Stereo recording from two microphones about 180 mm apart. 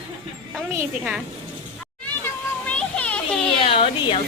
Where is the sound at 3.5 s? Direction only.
30° left (ahead or behind).